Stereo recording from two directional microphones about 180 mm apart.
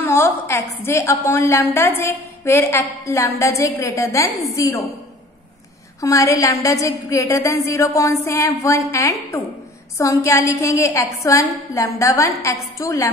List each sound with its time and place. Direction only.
0.0 s a woman's voice: 15° left (ahead or behind)
5.9 s a woman's voice: 15° left (ahead or behind)